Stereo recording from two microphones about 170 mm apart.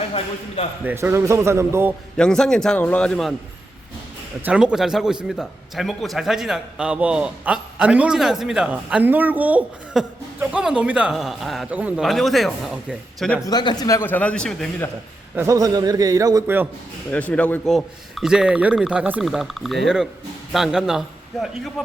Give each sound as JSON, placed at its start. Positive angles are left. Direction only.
{"t": 0.9, "sound": "speech", "side_deg": -15}
{"t": 2.1, "sound": "a man's voice", "side_deg": 5}
{"t": 4.4, "sound": "a man's voice", "side_deg": -5}
{"t": 13.4, "sound": "speech", "side_deg": 25}
{"t": 15.4, "sound": "a man's voice", "side_deg": -20}
{"t": 17.1, "sound": "a man's voice", "side_deg": 10}